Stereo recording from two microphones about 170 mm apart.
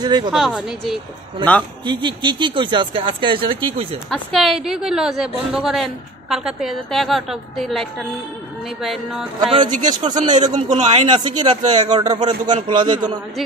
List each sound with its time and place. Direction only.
0.0 s speech: 25° right (ahead or behind)
0.3 s a woman's voice: centre (ahead or behind)
1.9 s speech: 25° right (ahead or behind)
4.1 s a woman's voice: centre (ahead or behind)
9.4 s speech: 30° right (ahead or behind)
10.5 s a man's voice: 45° right (ahead or behind)
11.1 s speech: 25° right (ahead or behind)